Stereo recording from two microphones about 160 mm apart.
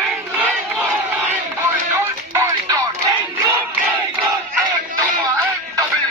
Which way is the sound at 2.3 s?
20° right (ahead or behind).